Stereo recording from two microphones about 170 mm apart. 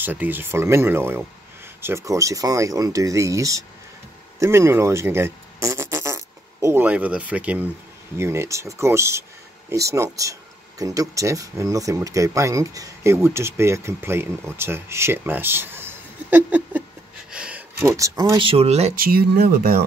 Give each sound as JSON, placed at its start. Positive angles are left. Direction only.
{"t": 0.0, "sound": "speech", "side_deg": -10}
{"t": 17.3, "sound": "a sound", "side_deg": -5}
{"t": 18.5, "sound": "speech", "side_deg": -35}
{"t": 18.9, "sound": "speech", "side_deg": -65}